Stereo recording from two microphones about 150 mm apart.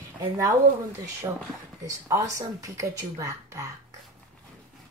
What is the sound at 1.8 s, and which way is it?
Speech, 20° right (ahead or behind).